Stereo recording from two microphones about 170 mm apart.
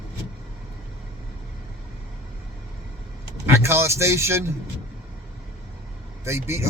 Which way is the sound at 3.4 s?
15° right (ahead or behind).